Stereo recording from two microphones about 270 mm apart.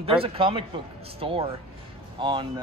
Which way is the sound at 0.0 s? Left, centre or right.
Right.